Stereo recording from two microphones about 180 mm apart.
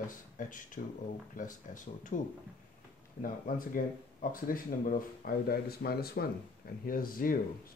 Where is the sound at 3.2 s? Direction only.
50° left (ahead or behind).